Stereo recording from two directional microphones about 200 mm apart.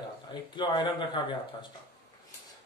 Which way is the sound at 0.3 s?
25° left (ahead or behind).